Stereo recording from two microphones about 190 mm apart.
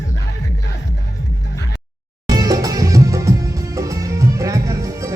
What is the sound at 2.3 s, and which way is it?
Music, 20° right (ahead or behind).